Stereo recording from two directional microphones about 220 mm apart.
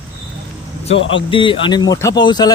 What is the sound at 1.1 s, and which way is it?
Speech, 25° left (ahead or behind).